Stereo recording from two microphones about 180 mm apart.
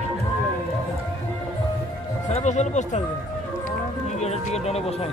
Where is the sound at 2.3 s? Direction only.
40° left (ahead or behind).